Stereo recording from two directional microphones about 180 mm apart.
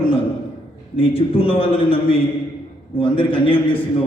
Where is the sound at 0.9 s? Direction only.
30° left (ahead or behind).